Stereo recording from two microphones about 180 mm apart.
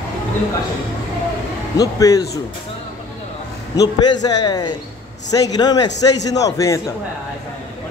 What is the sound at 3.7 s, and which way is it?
A man's voice, 20° left (ahead or behind).